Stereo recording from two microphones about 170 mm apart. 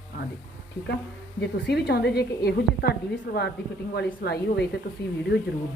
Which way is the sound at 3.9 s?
75° left (ahead or behind).